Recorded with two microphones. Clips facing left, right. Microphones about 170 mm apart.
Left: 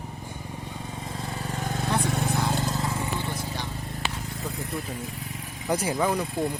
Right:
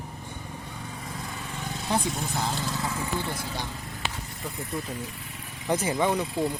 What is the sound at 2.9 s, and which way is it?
Vehicle, 30° left (ahead or behind).